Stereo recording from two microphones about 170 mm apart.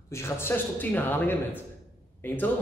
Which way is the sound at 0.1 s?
15° left (ahead or behind).